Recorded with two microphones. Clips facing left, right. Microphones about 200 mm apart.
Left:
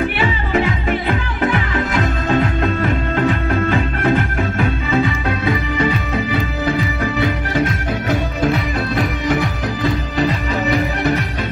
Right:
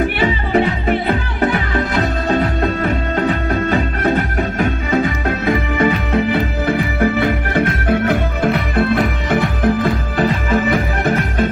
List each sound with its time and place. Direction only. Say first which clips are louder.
0.2 s music: right 3 dB; 40° right (ahead or behind)